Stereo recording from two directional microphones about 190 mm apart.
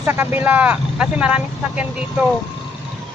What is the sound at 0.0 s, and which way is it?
Speech, 10° right (ahead or behind).